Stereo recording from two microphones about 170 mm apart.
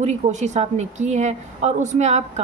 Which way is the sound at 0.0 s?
45° right (ahead or behind).